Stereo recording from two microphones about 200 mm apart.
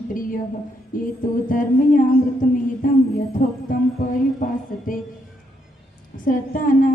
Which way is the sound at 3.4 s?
40° left (ahead or behind).